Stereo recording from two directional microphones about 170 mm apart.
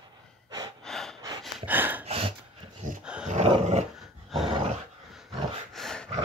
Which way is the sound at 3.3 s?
40° right (ahead or behind).